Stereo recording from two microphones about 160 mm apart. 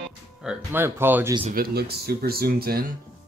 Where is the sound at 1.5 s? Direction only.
75° right (ahead or behind).